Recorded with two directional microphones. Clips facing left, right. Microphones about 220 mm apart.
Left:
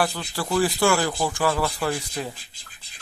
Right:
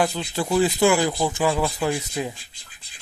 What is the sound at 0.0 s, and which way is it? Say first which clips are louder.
Speech: right 3 dB; 20° right (ahead or behind).